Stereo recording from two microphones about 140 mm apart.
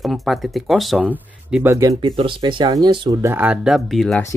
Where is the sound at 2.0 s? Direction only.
35° right (ahead or behind).